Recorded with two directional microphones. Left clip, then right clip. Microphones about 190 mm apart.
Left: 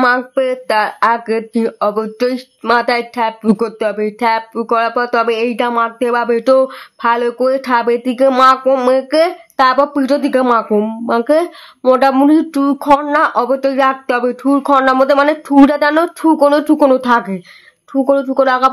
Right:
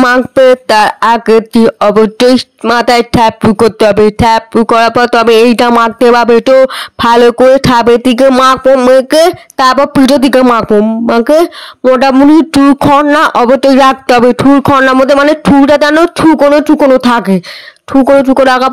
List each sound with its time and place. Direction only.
0.0 s speech: 45° right (ahead or behind)
7.0 s speech: 50° right (ahead or behind)